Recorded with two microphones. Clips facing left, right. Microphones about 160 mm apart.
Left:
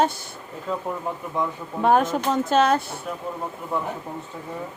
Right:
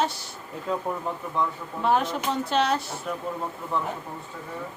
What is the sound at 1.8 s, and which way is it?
Speech, 50° left (ahead or behind).